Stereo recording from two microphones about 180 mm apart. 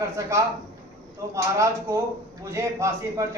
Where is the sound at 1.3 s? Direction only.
15° right (ahead or behind).